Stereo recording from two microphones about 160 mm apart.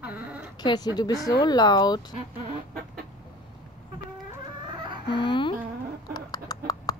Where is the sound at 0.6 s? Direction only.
25° left (ahead or behind).